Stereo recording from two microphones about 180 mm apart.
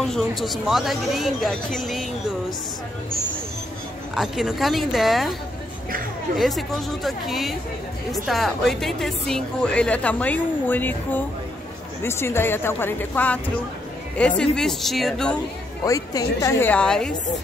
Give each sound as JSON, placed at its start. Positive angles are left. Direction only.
{"t": 0.0, "sound": "speech", "side_deg": 0}
{"t": 4.1, "sound": "speech", "side_deg": 0}
{"t": 6.3, "sound": "speech", "side_deg": 0}
{"t": 15.8, "sound": "speech", "side_deg": 20}